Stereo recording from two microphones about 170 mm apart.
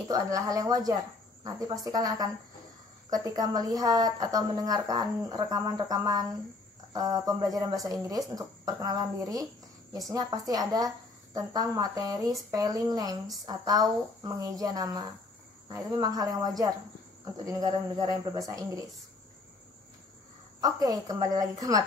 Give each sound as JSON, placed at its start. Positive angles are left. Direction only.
{"t": 0.1, "sound": "a woman's voice", "side_deg": -20}
{"t": 20.6, "sound": "a woman's voice", "side_deg": -20}